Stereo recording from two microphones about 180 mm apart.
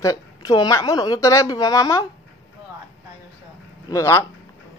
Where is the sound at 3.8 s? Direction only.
15° left (ahead or behind).